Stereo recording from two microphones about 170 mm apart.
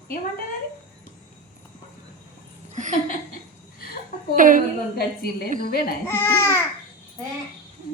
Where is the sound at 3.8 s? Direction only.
65° left (ahead or behind).